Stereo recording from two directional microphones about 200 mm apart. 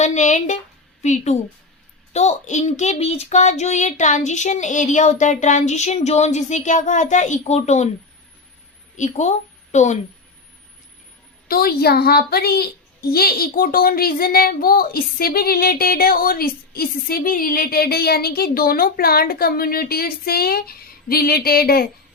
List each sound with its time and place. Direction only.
0.0 s speech: 35° left (ahead or behind)
9.0 s speech: 35° left (ahead or behind)
11.4 s a woman's voice: 50° left (ahead or behind)